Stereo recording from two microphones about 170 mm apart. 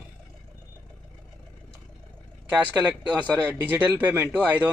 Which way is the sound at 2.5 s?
10° right (ahead or behind).